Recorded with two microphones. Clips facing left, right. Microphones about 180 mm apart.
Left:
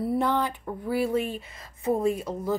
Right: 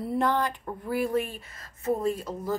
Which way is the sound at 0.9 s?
50° right (ahead or behind).